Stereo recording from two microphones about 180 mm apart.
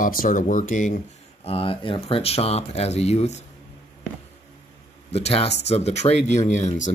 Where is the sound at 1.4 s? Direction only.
30° left (ahead or behind).